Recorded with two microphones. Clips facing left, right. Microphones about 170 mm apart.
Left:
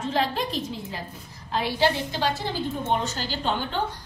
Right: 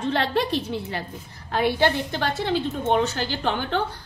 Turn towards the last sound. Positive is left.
turn(degrees=-70)  # may be behind; listen again after turning